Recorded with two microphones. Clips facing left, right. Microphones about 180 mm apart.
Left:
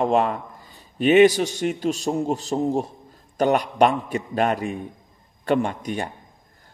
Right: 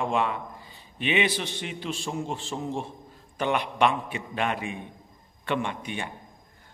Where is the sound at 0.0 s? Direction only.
40° left (ahead or behind).